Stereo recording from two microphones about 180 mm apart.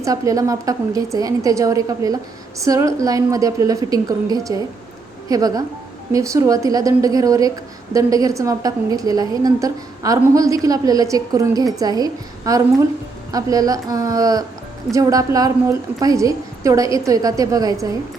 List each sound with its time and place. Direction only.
0.0 s a woman's voice: 20° right (ahead or behind)